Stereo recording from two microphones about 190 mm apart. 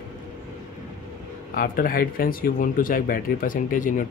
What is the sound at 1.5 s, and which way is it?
Speech, 50° left (ahead or behind).